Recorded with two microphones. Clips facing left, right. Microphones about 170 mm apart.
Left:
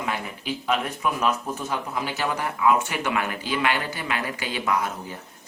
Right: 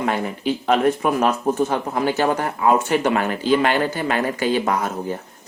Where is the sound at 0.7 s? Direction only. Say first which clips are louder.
Right 8 dB; 50° right (ahead or behind).